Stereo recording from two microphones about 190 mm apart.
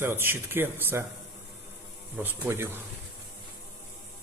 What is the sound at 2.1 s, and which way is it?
Speech, 10° right (ahead or behind).